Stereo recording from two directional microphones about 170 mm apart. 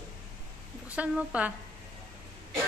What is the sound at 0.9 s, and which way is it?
Speech, 10° right (ahead or behind).